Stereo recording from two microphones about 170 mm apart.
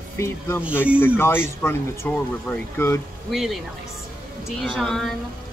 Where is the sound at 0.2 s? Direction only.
15° left (ahead or behind).